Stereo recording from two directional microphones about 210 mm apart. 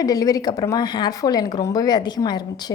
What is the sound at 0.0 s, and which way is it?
A woman's voice, 15° left (ahead or behind).